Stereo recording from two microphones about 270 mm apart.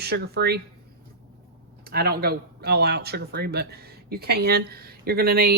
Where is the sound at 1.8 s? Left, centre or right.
Right.